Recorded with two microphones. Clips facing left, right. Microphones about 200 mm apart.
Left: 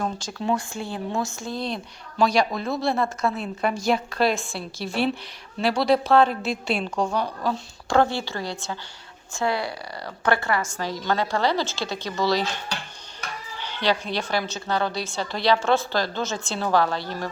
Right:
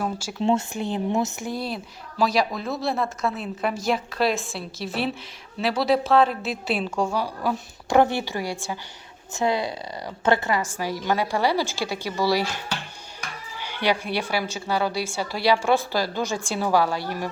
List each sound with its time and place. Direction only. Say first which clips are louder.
0.0 s a woman's voice: even; 10° right (ahead or behind)
0.3 s a woman's voice: right 4 dB; 20° right (ahead or behind)
13.6 s a woman's voice: even; 10° right (ahead or behind)